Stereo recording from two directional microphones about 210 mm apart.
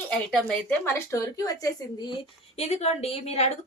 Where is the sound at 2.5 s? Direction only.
30° left (ahead or behind).